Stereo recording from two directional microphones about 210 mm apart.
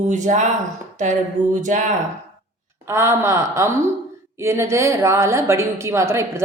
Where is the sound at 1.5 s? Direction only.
35° right (ahead or behind).